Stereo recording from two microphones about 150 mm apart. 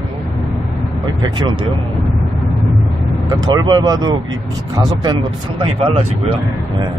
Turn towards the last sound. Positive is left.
turn(degrees=-40)  # may be behind; listen again after turning